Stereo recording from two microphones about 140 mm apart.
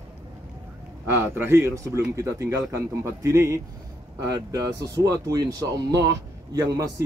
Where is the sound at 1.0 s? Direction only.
15° right (ahead or behind).